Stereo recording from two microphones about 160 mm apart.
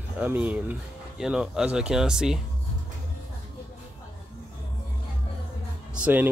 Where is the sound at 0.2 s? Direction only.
10° right (ahead or behind).